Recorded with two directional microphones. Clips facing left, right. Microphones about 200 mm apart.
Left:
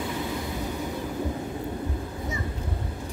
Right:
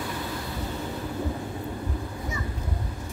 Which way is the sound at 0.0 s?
15° left (ahead or behind).